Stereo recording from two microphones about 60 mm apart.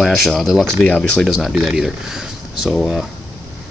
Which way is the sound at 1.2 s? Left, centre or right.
Centre.